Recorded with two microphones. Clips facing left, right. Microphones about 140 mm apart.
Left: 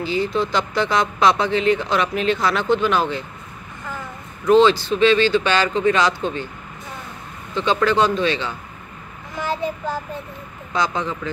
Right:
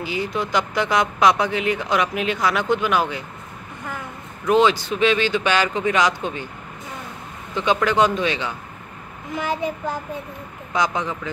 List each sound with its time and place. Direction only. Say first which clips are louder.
0.0 s speech: left 4 dB; 15° right (ahead or behind)
4.5 s speech: left 3 dB; 15° right (ahead or behind)
7.5 s speech: left 1 dB; 15° right (ahead or behind)
10.7 s speech: even; 15° right (ahead or behind)